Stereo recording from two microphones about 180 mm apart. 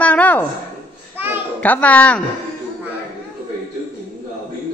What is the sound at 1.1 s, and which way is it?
Children playing, 10° right (ahead or behind).